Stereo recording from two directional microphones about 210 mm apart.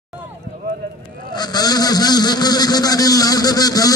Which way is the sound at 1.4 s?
20° left (ahead or behind).